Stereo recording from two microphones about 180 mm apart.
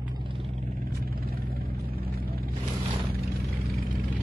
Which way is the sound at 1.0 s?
55° right (ahead or behind).